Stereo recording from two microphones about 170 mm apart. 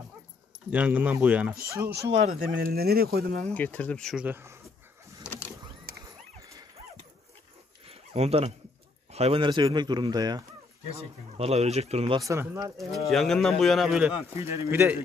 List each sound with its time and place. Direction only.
0.7 s speech: 10° right (ahead or behind)
1.9 s speech: 80° right; by 3.4 s 65° right (ahead or behind)
3.4 s speech: 10° left (ahead or behind)
4.3 s speech: 15° right (ahead or behind)
5.2 s power windows: 15° left (ahead or behind)
7.9 s dog: 35° right (ahead or behind)
9.1 s speech: 35° right (ahead or behind)
11.3 s speech: 40° right (ahead or behind)
12.3 s speech: 20° right (ahead or behind)
12.7 s speech: centre (ahead or behind)
14.3 s speech: 15° right (ahead or behind)